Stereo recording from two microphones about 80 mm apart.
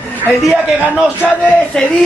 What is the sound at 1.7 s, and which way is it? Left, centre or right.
Speech, centre.